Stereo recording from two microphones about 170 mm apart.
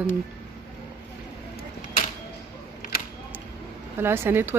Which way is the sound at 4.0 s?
15° right (ahead or behind).